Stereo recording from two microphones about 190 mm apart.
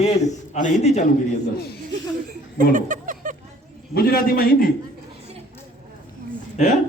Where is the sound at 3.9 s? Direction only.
55° left (ahead or behind).